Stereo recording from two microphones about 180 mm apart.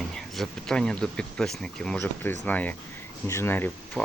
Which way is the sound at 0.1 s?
5° left (ahead or behind).